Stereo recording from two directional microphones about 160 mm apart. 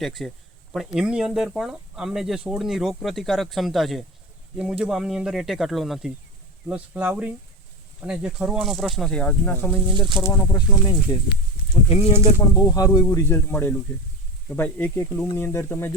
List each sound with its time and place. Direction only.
0.0 s speech: centre (ahead or behind); by 11.2 s 25° left (ahead or behind)
11.9 s speech: 40° left (ahead or behind)
12.5 s speech: 20° left (ahead or behind)